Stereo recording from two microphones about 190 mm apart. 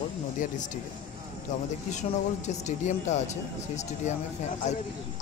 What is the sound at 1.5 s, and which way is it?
Speech, 40° left (ahead or behind).